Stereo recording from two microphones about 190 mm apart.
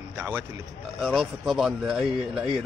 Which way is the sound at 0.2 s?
10° right (ahead or behind).